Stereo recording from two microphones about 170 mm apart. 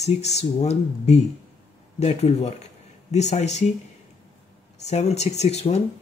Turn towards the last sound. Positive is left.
turn(degrees=40)  # may be behind; listen again after turning